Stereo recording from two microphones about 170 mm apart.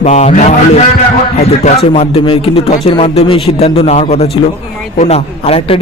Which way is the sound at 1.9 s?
35° left (ahead or behind).